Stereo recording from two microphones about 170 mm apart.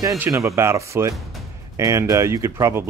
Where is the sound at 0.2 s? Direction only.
15° right (ahead or behind).